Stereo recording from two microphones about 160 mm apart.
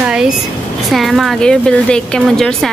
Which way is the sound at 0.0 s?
5° right (ahead or behind).